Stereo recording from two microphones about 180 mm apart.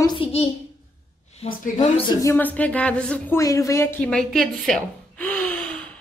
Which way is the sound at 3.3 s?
20° left (ahead or behind).